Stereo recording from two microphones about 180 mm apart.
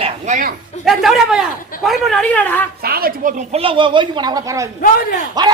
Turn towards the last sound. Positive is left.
turn(degrees=-20)  # may be behind; listen again after turning